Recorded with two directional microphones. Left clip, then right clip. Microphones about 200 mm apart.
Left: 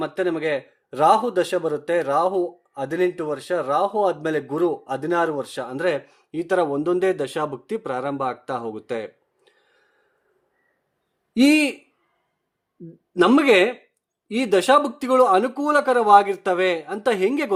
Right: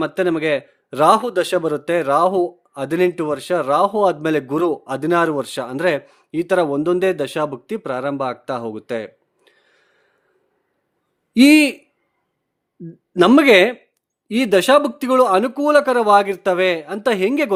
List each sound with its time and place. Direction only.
0.0 s a man's voice: 40° right (ahead or behind)
11.3 s a man's voice: 35° right (ahead or behind)
13.1 s speech: 30° right (ahead or behind)